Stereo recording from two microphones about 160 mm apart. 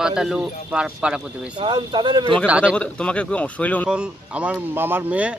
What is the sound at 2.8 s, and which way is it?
Speech, 5° left (ahead or behind).